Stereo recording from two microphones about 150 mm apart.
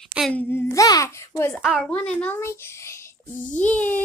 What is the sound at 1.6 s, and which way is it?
Speech, 5° right (ahead or behind).